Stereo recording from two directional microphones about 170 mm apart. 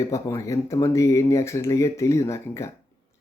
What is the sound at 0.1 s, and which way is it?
Speech, 15° left (ahead or behind).